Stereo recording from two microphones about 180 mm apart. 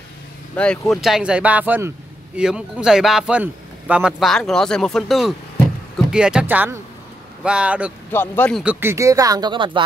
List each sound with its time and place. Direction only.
0.6 s speech: 5° left (ahead or behind)
8.1 s a man's voice: 10° left (ahead or behind)
8.6 s speech: 10° right (ahead or behind)